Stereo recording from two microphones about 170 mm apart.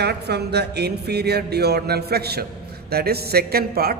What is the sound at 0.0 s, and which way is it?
A man's voice, 75° right (ahead or behind).